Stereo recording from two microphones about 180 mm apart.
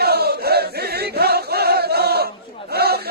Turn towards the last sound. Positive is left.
turn(degrees=-60)  # may be behind; listen again after turning